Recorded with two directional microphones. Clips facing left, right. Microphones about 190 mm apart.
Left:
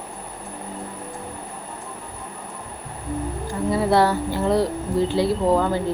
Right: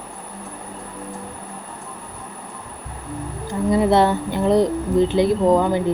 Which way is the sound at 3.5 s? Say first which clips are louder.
Right 4 dB; 20° right (ahead or behind).